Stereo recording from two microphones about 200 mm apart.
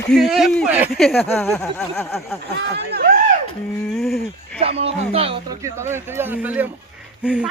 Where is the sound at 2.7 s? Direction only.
50° right (ahead or behind).